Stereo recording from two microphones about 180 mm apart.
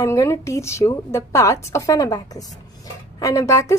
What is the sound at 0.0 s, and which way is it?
A woman's voice, 15° left (ahead or behind).